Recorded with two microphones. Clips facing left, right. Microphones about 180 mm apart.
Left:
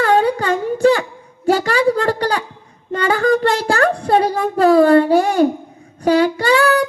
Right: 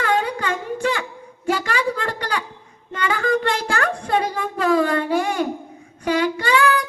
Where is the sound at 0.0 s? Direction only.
35° left (ahead or behind).